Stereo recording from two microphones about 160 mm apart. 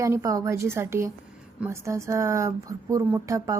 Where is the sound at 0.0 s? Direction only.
20° right (ahead or behind).